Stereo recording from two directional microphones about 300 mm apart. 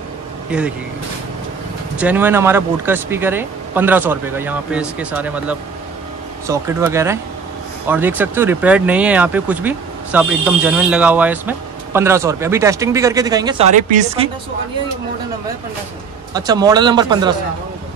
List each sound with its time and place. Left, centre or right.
0.5 s speech: centre
2.0 s speech: centre; by 14.3 s right
16.3 s speech: centre